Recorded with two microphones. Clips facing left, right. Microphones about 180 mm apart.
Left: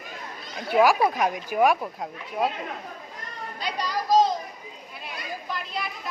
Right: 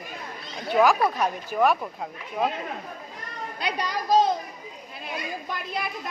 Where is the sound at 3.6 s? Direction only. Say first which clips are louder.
Even; 60° right (ahead or behind).